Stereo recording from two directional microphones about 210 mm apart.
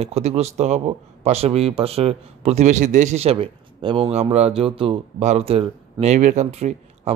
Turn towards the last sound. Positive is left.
turn(degrees=-30)  # may be behind; listen again after turning